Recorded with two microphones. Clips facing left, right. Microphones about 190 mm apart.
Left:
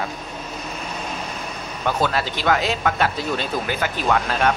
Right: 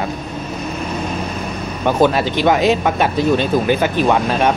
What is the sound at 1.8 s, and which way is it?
Speech, 20° right (ahead or behind).